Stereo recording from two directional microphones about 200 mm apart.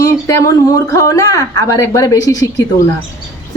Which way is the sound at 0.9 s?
15° left (ahead or behind).